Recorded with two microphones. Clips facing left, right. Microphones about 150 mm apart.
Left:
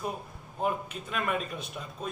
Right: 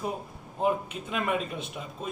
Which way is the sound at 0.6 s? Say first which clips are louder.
Right 4 dB; 15° right (ahead or behind).